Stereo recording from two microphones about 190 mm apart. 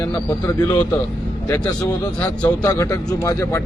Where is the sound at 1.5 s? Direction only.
10° left (ahead or behind).